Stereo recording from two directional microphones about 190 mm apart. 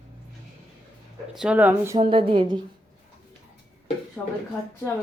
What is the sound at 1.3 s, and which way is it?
Speech, 5° right (ahead or behind).